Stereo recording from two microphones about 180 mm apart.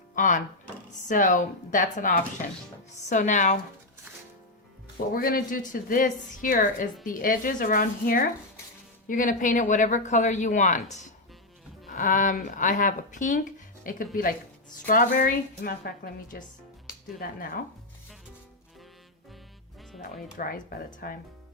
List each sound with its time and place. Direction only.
1.0 s speech: 45° left (ahead or behind)
5.1 s speech: 55° left (ahead or behind)
20.0 s speech: 50° left (ahead or behind)